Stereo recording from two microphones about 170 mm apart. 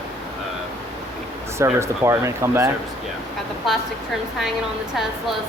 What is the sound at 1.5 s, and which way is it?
Speech, 15° right (ahead or behind).